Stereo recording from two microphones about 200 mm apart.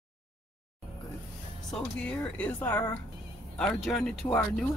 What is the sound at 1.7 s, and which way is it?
Speech, 5° left (ahead or behind).